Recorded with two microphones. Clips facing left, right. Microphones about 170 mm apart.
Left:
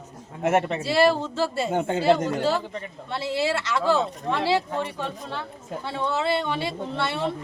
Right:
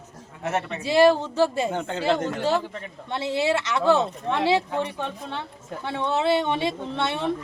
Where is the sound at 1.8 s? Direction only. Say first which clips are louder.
Left 6 dB; 15° left (ahead or behind).